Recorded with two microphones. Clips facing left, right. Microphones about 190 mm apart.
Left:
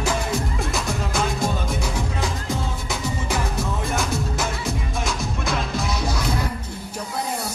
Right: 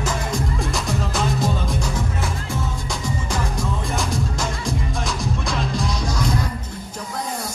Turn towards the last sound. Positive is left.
turn(degrees=5)  # may be behind; listen again after turning